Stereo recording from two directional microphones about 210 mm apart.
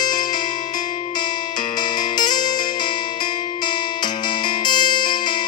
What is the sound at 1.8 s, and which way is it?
Music, 20° left (ahead or behind).